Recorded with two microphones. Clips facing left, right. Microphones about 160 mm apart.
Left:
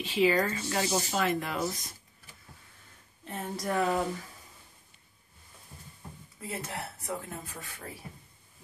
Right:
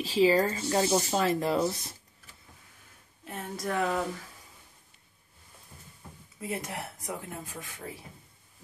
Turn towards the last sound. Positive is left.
turn(degrees=-15)  # may be behind; listen again after turning